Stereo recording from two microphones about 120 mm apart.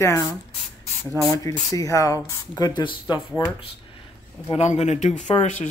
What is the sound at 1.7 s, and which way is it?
Speech, 30° left (ahead or behind).